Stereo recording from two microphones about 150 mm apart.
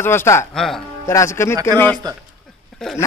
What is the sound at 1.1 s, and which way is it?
Speech, 20° left (ahead or behind).